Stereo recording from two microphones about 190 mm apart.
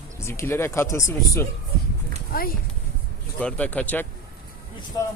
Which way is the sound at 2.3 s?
50° left (ahead or behind).